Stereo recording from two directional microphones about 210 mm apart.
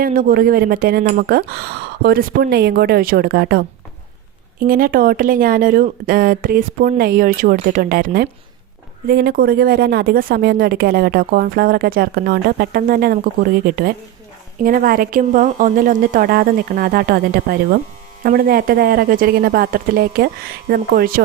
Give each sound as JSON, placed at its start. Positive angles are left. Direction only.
{"t": 0.0, "sound": "speech", "side_deg": -40}
{"t": 4.6, "sound": "speech", "side_deg": -40}